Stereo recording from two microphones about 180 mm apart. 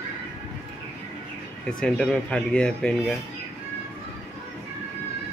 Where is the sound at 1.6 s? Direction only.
5° left (ahead or behind).